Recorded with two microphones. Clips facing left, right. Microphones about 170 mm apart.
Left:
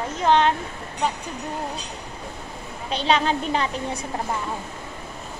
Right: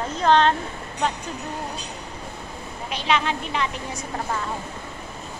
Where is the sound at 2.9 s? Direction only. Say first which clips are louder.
Left 3 dB; 35° left (ahead or behind).